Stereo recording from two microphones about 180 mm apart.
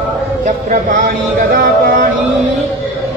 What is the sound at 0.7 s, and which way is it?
A man's voice, 50° right (ahead or behind).